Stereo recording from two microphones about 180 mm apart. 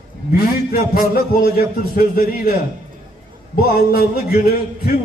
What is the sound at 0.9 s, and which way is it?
A man's voice, 55° left (ahead or behind).